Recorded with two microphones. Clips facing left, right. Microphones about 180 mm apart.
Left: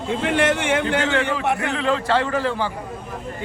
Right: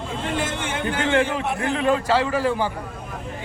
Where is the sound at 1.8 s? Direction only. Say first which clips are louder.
Right 2 dB; 10° right (ahead or behind).